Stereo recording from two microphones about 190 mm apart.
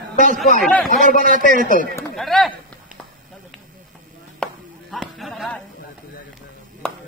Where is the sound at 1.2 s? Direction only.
45° right (ahead or behind).